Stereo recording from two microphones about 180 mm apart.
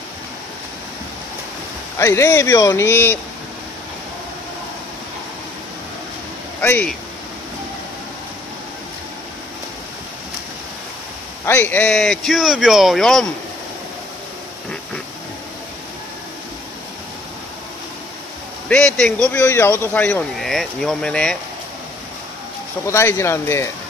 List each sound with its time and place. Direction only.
2.0 s speech: 15° left (ahead or behind)
6.6 s speech: 10° left (ahead or behind)
11.4 s speech: 15° left (ahead or behind)
18.7 s speech: 5° left (ahead or behind)
22.8 s speech: 15° left (ahead or behind)